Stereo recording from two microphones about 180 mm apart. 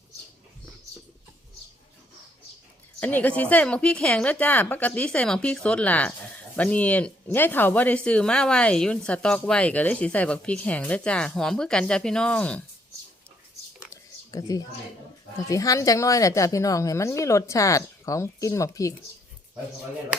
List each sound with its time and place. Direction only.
3.0 s speech: 10° left (ahead or behind)
13.9 s a sound: 20° left (ahead or behind)
15.4 s speech: 20° left (ahead or behind)